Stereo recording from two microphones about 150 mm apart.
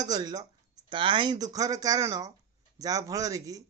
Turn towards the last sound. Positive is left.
turn(degrees=-25)  # may be behind; listen again after turning